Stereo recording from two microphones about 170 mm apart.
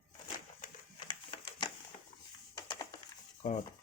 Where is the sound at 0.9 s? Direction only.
30° left (ahead or behind).